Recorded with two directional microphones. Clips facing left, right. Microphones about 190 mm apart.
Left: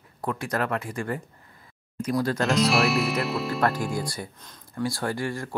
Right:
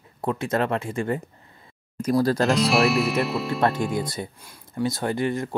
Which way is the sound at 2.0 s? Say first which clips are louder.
Right 4 dB; 35° right (ahead or behind).